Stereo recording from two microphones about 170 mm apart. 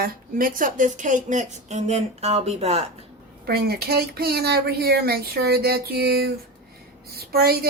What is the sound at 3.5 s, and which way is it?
Speech, 70° right (ahead or behind).